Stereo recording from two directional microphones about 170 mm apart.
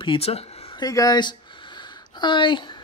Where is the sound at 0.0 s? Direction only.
30° left (ahead or behind).